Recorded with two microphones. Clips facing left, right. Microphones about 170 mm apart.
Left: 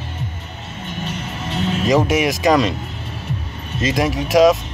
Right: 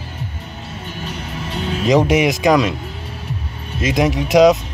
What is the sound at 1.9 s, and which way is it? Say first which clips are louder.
Speech: right 3 dB; 15° right (ahead or behind).